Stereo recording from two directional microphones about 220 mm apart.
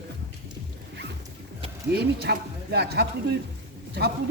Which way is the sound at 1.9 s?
45° right (ahead or behind).